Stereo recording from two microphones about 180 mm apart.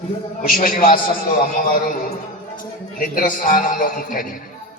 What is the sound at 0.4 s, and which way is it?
A man's voice, 50° left (ahead or behind).